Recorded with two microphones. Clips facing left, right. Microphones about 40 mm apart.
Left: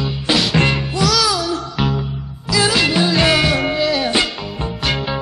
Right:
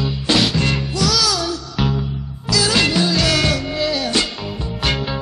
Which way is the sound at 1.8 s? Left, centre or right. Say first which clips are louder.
Right 1 dB; centre.